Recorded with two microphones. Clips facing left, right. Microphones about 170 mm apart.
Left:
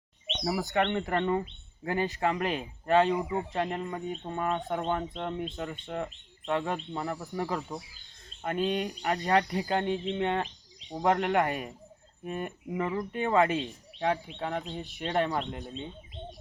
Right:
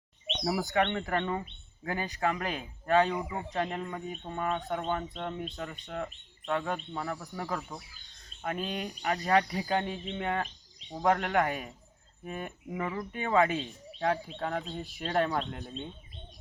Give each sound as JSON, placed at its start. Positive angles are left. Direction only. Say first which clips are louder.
{"t": 0.3, "sound": "speech", "louder": "even", "side_deg": 0}
{"t": 12.8, "sound": "speech", "louder": "left 3 dB", "side_deg": 15}
{"t": 13.1, "sound": "speech", "louder": "left 1 dB", "side_deg": 0}
{"t": 15.3, "sound": "speech", "louder": "left 1 dB", "side_deg": 10}